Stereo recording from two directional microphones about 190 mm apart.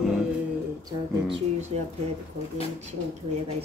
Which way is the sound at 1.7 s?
30° right (ahead or behind).